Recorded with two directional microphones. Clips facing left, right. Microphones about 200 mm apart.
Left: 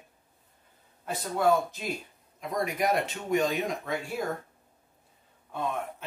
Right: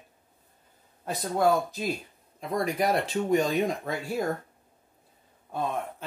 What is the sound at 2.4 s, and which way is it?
Speech, 30° right (ahead or behind).